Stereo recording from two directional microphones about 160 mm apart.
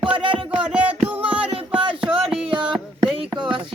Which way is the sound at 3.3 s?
30° right (ahead or behind).